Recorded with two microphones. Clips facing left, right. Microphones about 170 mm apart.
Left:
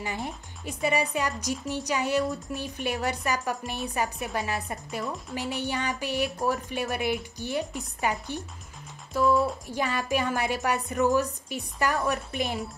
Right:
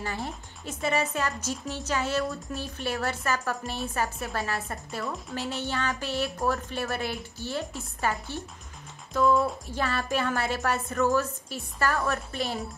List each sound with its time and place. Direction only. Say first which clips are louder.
0.0 s speech: even; 15° left (ahead or behind)